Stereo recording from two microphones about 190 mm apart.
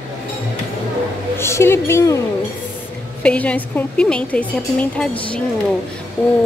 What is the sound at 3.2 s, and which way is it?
A woman's voice, 5° left (ahead or behind).